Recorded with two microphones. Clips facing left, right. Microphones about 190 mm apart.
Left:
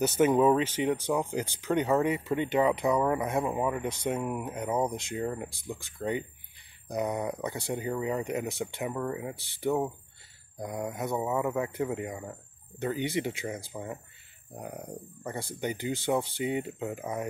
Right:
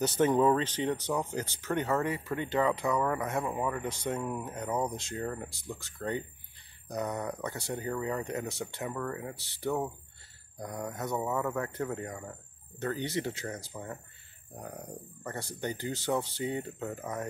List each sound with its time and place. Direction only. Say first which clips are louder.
0.2 s speech: left 2 dB; 10° left (ahead or behind)